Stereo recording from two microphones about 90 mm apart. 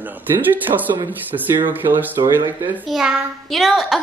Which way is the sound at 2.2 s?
45° right (ahead or behind).